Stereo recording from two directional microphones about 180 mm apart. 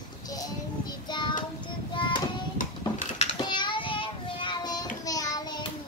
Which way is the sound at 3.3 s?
25° left (ahead or behind).